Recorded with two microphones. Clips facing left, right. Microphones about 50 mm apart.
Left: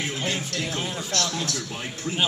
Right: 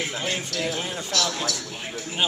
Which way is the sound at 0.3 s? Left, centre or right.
Centre.